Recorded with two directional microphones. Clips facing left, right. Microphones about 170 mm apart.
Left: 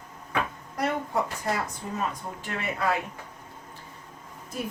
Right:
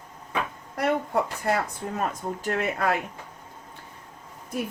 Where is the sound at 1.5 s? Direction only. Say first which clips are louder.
Right 6 dB; 60° right (ahead or behind).